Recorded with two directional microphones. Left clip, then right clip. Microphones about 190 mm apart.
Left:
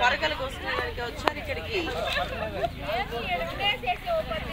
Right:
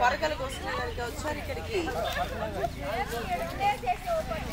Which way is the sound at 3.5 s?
15° left (ahead or behind).